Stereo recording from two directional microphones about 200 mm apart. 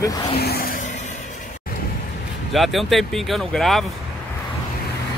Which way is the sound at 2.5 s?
Centre (ahead or behind).